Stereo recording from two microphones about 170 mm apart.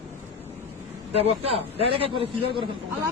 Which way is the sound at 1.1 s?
35° right (ahead or behind).